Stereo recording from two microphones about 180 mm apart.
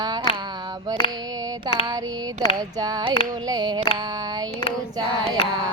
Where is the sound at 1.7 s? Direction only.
25° right (ahead or behind).